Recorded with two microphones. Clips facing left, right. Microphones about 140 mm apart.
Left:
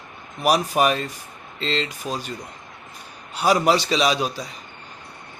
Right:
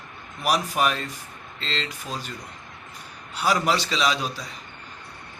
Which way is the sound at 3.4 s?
15° left (ahead or behind).